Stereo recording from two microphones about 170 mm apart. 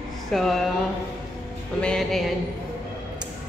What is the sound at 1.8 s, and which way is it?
Speech, 5° left (ahead or behind).